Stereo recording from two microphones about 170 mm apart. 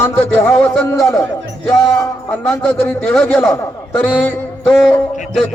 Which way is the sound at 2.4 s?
5° left (ahead or behind).